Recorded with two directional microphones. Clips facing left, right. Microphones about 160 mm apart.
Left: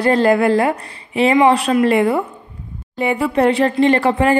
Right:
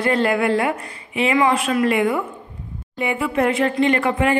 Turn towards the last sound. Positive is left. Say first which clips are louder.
# left 4 dB
turn(degrees=35)  # may be behind; listen again after turning